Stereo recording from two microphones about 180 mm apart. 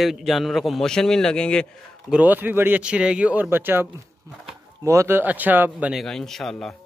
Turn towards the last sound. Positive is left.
turn(degrees=0)  # may be behind; listen again after turning